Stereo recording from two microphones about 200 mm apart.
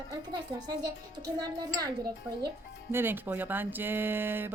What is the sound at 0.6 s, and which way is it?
Speech, 20° right (ahead or behind).